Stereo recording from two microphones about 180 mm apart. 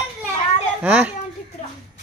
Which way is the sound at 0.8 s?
10° right (ahead or behind).